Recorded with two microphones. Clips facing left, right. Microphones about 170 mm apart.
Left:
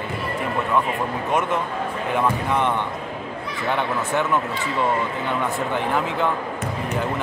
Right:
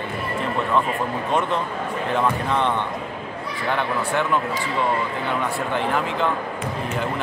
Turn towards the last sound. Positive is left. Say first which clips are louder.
# even
turn(degrees=15)  # may be behind; listen again after turning